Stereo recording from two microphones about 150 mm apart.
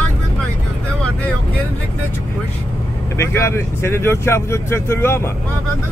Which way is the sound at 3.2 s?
15° left (ahead or behind).